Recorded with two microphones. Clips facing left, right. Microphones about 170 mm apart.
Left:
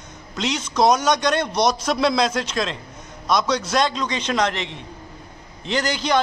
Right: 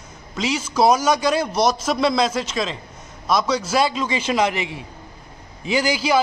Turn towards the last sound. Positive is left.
turn(degrees=-5)  # may be behind; listen again after turning